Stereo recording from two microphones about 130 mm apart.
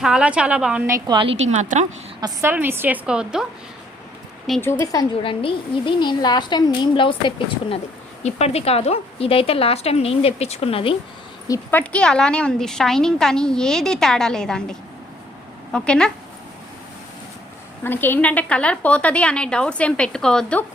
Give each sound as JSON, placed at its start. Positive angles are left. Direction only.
{"t": 0.0, "sound": "a woman's voice", "side_deg": -5}
{"t": 0.9, "sound": "a woman's voice", "side_deg": -30}
{"t": 1.4, "sound": "speech", "side_deg": -65}
{"t": 2.4, "sound": "a woman's voice", "side_deg": -15}
{"t": 4.6, "sound": "a woman's voice", "side_deg": 20}
{"t": 5.2, "sound": "a woman's voice", "side_deg": 45}
{"t": 8.2, "sound": "a woman's voice", "side_deg": 55}
{"t": 11.7, "sound": "a woman's voice", "side_deg": 10}
{"t": 17.8, "sound": "a woman's voice", "side_deg": 15}